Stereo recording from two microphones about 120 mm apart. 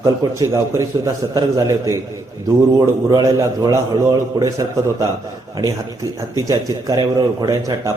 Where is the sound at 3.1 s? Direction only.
30° right (ahead or behind).